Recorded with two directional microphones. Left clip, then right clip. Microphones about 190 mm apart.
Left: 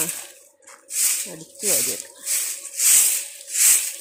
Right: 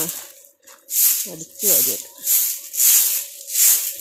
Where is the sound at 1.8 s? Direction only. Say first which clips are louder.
Right 2 dB; 30° right (ahead or behind).